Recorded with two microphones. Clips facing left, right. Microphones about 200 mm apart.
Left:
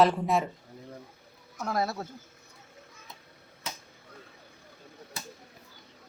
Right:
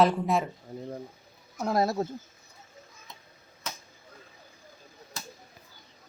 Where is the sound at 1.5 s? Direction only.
30° right (ahead or behind).